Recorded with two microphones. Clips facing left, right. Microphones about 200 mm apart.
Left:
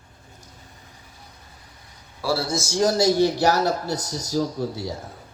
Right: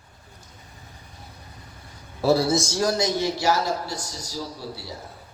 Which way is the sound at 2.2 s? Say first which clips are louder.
Right 5 dB; 20° right (ahead or behind).